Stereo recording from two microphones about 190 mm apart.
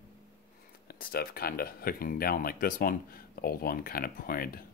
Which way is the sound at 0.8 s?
50° left (ahead or behind).